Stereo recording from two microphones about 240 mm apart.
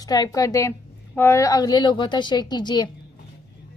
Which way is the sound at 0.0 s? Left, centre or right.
Centre.